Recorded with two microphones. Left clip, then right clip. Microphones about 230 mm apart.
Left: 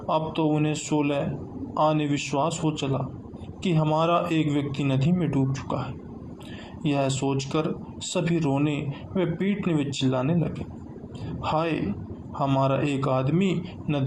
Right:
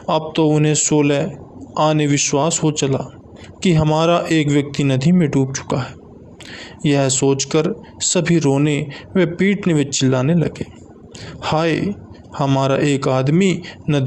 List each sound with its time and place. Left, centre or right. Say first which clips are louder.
0.1 s speech: right 8 dB; right